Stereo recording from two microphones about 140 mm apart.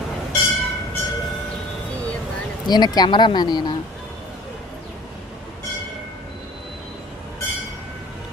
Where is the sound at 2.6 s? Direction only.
30° left (ahead or behind).